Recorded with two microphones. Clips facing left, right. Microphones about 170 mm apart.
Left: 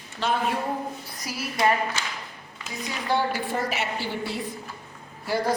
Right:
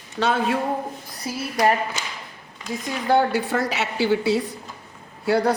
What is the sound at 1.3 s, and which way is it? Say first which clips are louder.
Speech: right 5 dB; 25° right (ahead or behind).